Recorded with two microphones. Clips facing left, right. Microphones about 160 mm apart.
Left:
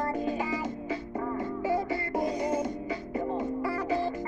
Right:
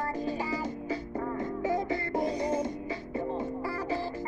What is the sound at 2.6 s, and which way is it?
Music, 30° right (ahead or behind).